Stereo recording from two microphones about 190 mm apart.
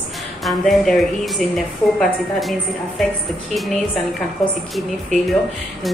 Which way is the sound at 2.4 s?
Centre (ahead or behind).